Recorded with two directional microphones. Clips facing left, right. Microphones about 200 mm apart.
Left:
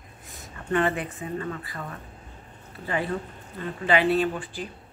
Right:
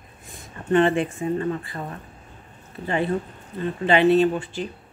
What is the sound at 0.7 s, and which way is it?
Speech, 25° right (ahead or behind).